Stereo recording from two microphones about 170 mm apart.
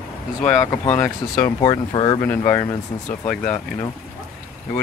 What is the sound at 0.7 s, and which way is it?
Speech, 15° left (ahead or behind).